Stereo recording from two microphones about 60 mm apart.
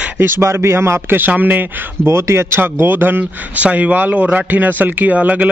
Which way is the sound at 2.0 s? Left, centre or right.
Right.